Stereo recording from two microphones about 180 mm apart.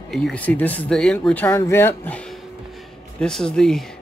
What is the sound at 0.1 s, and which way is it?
Speech, 5° left (ahead or behind).